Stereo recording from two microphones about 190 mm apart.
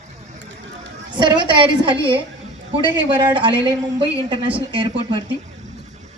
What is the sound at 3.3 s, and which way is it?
A woman's voice, 25° right (ahead or behind).